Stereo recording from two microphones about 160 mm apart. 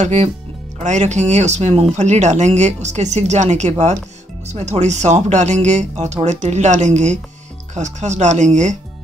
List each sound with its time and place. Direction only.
0.0 s speech: 45° right (ahead or behind)